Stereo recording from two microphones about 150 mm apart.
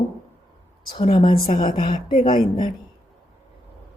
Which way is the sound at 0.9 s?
35° left (ahead or behind).